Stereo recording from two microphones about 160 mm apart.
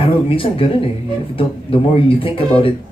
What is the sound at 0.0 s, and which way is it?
Speech, 35° left (ahead or behind).